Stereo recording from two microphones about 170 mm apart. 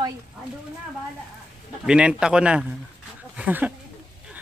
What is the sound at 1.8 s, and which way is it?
A man's voice, 5° right (ahead or behind).